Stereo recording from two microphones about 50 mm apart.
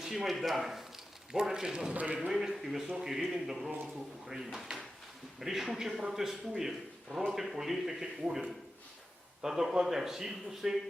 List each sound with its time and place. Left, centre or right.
0.0 s a man's voice: centre
1.9 s a man's voice: right
2.1 s a man's voice: centre
9.4 s a man's voice: centre